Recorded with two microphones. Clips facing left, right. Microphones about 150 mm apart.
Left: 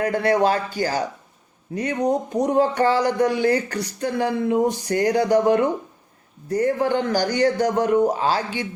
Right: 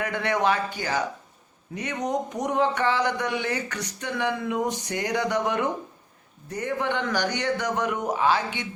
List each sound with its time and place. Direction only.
0.0 s speech: 35° left (ahead or behind)